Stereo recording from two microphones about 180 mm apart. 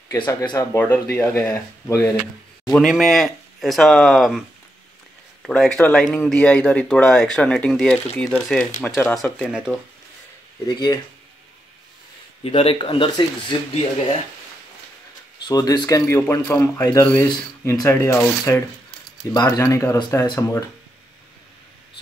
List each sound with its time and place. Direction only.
0.1 s speech: 15° left (ahead or behind)
2.7 s speech: centre (ahead or behind)
9.1 s speech: centre (ahead or behind)
10.7 s a man's voice: 25° left (ahead or behind)
12.4 s a man's voice: 30° left (ahead or behind)
15.4 s a man's voice: 20° left (ahead or behind)